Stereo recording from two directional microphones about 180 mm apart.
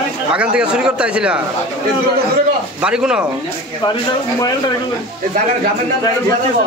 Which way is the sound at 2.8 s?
5° right (ahead or behind).